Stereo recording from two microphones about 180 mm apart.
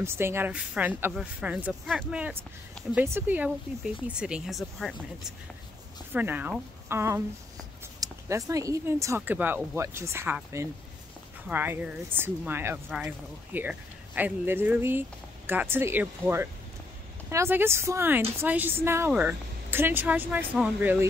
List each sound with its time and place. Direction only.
0.0 s speech: 15° right (ahead or behind)
6.1 s speech: 10° right (ahead or behind)